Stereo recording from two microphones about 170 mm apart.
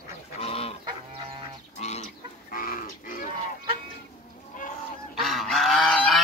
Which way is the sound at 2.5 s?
55° left (ahead or behind).